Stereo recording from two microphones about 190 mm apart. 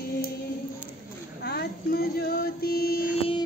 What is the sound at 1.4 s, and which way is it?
Female singing, 55° left (ahead or behind).